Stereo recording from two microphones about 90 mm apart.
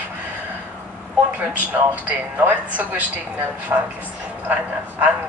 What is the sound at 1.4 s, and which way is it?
A woman's voice, 15° right (ahead or behind).